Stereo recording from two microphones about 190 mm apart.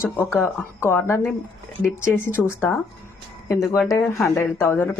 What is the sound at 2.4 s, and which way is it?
A woman's voice, 10° left (ahead or behind).